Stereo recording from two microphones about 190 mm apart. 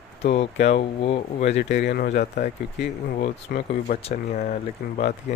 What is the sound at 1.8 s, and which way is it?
Speech, 55° left (ahead or behind).